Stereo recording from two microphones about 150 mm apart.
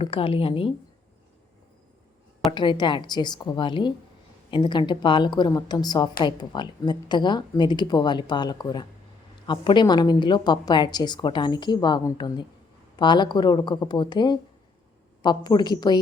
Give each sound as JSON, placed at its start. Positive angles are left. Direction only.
{"t": 0.0, "sound": "a woman's voice", "side_deg": 40}
{"t": 2.5, "sound": "a woman's voice", "side_deg": 30}